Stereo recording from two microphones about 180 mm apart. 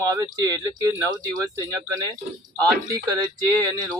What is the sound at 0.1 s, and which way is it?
Speech, 20° right (ahead or behind).